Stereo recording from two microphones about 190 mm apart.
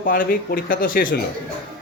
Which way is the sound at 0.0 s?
50° left (ahead or behind).